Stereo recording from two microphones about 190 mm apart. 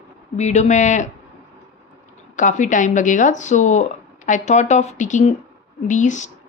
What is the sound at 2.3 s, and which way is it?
Speech, 40° left (ahead or behind).